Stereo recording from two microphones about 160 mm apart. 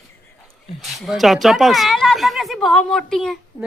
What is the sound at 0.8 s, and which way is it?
Speech, centre (ahead or behind).